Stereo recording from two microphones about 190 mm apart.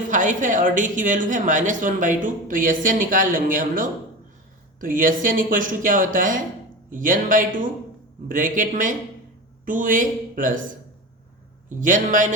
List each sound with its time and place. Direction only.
0.1 s a woman's voice: 40° right (ahead or behind)
11.8 s a woman's voice: 45° right (ahead or behind)